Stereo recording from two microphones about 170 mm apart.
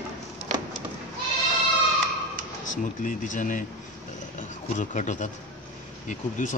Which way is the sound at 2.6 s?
50° left (ahead or behind).